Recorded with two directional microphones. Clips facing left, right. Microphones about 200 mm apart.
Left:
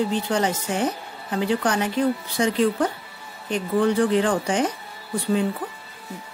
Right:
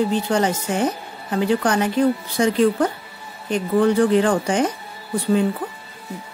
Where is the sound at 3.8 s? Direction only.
45° right (ahead or behind).